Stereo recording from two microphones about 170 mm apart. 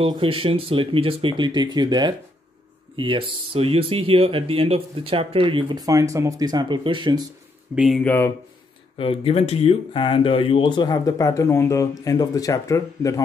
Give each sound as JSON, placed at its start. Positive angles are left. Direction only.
{"t": 0.0, "sound": "speech", "side_deg": -30}
{"t": 7.7, "sound": "speech", "side_deg": 0}
{"t": 8.9, "sound": "speech", "side_deg": 35}